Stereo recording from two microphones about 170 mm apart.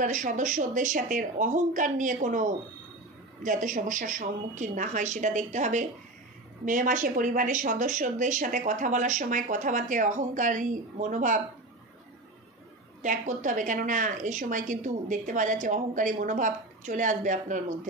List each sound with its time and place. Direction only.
0.0 s a woman's voice: 50° right (ahead or behind)
13.0 s a woman's voice: 50° right (ahead or behind)